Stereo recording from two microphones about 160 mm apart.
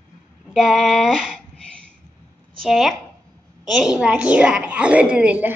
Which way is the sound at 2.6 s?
Centre (ahead or behind).